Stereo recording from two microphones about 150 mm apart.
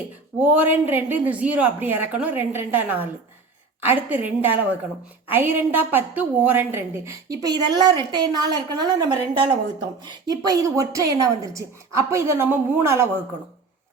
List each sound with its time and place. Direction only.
0.4 s a woman's voice: 10° right (ahead or behind)